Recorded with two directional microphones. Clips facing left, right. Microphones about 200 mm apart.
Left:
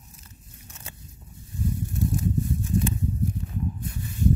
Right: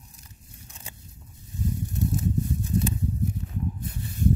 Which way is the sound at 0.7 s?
15° right (ahead or behind).